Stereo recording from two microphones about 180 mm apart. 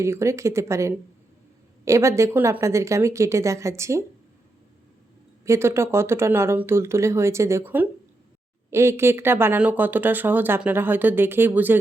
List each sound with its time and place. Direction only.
0.0 s speech: 15° right (ahead or behind)
5.5 s speech: 15° right (ahead or behind)